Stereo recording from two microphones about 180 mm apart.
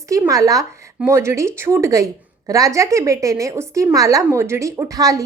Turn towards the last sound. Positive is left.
turn(degrees=-20)  # may be behind; listen again after turning